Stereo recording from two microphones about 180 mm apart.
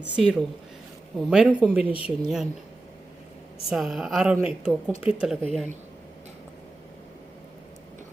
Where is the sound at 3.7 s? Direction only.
Centre (ahead or behind).